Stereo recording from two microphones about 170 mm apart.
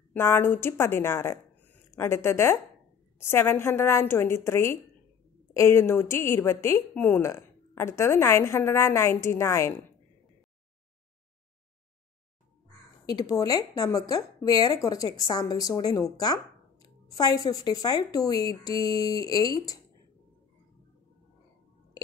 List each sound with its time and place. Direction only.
0.1 s a woman's voice: 15° left (ahead or behind)
13.0 s speech: 25° left (ahead or behind)